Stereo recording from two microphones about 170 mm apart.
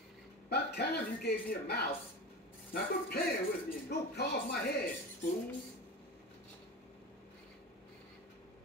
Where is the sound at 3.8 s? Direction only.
70° left (ahead or behind).